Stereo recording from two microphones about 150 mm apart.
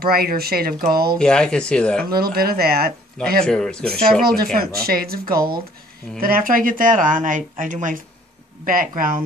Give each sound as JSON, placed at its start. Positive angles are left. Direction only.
{"t": 0.0, "sound": "speech", "side_deg": -90}
{"t": 1.1, "sound": "speech", "side_deg": 5}
{"t": 2.0, "sound": "speech", "side_deg": -90}
{"t": 3.4, "sound": "speech", "side_deg": 5}
{"t": 4.2, "sound": "speech", "side_deg": -85}
{"t": 6.1, "sound": "speech", "side_deg": -75}